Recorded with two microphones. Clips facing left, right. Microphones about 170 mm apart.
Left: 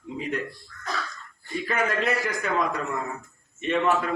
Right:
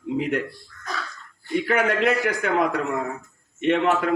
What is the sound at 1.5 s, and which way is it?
A man's voice, 65° right (ahead or behind).